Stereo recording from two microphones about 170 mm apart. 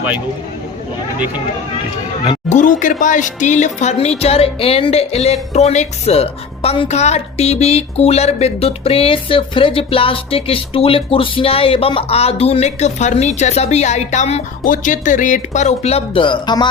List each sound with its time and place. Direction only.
2.3 s speech: 45° left (ahead or behind); by 16.6 s 25° left (ahead or behind)